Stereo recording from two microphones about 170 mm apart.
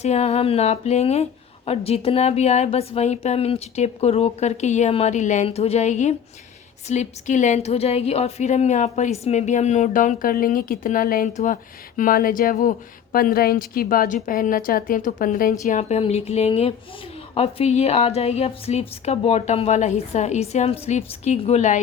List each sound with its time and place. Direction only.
0.0 s a woman's voice: 40° left (ahead or behind); by 15.5 s 55° left (ahead or behind)
15.6 s speech: 40° left (ahead or behind)